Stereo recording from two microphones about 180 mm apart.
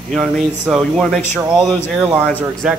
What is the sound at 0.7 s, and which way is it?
Speech, centre (ahead or behind).